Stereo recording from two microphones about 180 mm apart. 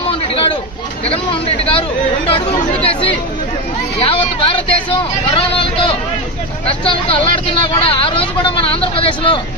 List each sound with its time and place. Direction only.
1.0 s speech: 30° left (ahead or behind)
2.2 s chatter: 30° left (ahead or behind)
4.0 s a sound: 30° left (ahead or behind)
6.7 s speech: 30° left (ahead or behind)